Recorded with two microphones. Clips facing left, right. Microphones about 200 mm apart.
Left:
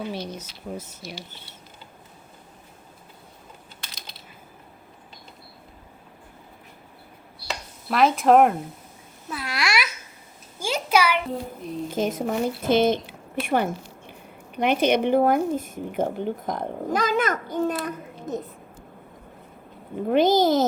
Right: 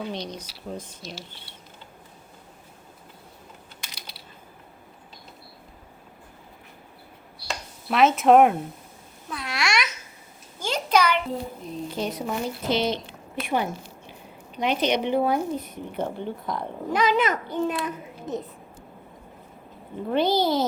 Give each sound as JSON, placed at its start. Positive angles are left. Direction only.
{"t": 0.1, "sound": "speech", "side_deg": 5}
{"t": 3.8, "sound": "mechanisms", "side_deg": -10}
{"t": 7.4, "sound": "a sound", "side_deg": 0}
{"t": 9.3, "sound": "babbling", "side_deg": 0}
{"t": 10.6, "sound": "a sound", "side_deg": 10}
{"t": 11.9, "sound": "a child's voice", "side_deg": 45}
{"t": 20.1, "sound": "a child's voice", "side_deg": 45}